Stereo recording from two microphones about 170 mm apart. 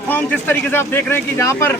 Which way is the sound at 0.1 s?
10° left (ahead or behind).